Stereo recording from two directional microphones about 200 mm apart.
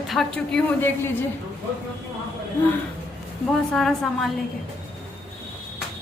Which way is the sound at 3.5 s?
Centre (ahead or behind).